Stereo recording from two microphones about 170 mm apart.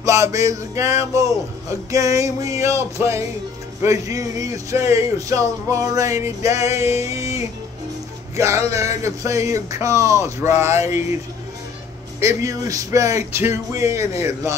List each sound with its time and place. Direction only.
0.0 s speech: 20° right (ahead or behind)
7.1 s music: 15° right (ahead or behind)
8.4 s speech: 15° right (ahead or behind)
12.2 s speech: 15° right (ahead or behind)